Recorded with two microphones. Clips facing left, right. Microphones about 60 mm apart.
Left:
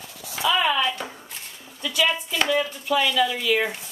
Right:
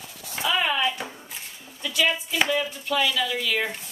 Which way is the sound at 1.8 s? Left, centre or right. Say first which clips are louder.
Left 1 dB; centre.